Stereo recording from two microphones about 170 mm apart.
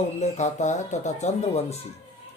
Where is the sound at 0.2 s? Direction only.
45° left (ahead or behind).